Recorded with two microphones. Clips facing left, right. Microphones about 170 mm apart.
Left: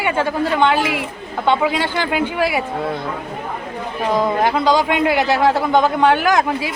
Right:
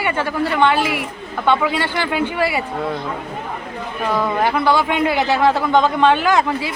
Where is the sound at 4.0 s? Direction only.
20° left (ahead or behind).